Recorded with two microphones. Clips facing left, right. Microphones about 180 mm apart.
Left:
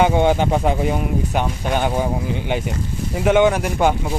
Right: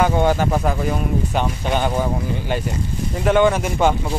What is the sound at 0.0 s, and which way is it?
Speech, 15° left (ahead or behind).